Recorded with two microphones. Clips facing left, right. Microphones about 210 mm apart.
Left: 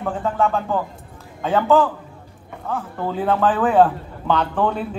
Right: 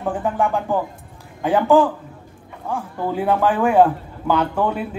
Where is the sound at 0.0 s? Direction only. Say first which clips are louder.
Even; 15° right (ahead or behind).